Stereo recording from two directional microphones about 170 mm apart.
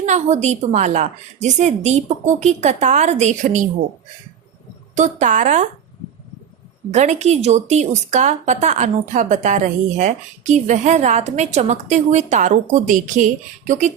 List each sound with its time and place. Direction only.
0.0 s a woman's voice: 45° right (ahead or behind)
4.9 s a woman's voice: 45° right (ahead or behind)
6.9 s a woman's voice: 40° right (ahead or behind)